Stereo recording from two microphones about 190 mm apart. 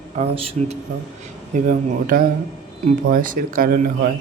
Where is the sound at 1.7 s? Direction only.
45° right (ahead or behind).